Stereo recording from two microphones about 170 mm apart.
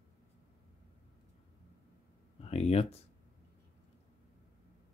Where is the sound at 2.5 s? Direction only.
35° left (ahead or behind).